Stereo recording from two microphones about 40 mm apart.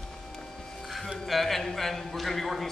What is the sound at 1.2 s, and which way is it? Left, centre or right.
A man's voice, centre.